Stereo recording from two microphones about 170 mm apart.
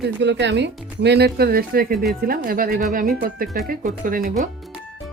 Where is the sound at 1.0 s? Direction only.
75° right (ahead or behind); by 4.3 s 50° right (ahead or behind).